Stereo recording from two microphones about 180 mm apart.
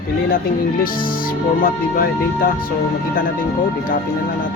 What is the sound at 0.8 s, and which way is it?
Speech, 50° left (ahead or behind).